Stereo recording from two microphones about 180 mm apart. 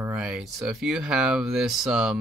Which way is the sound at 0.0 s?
5° right (ahead or behind).